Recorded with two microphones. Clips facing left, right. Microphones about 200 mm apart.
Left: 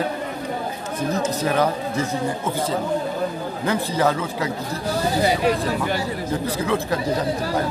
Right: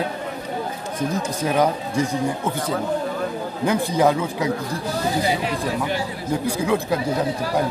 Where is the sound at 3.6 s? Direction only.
15° right (ahead or behind).